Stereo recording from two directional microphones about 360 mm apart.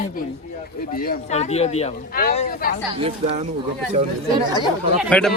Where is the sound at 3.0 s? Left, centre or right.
Centre.